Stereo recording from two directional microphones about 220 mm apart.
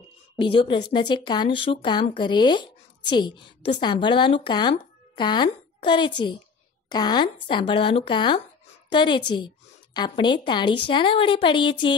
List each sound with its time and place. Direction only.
0.4 s speech: 20° left (ahead or behind)